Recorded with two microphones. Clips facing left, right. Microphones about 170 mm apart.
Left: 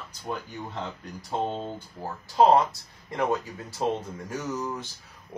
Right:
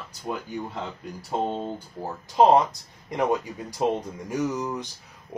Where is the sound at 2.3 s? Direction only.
20° right (ahead or behind).